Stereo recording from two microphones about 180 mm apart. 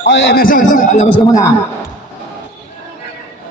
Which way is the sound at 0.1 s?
75° left (ahead or behind).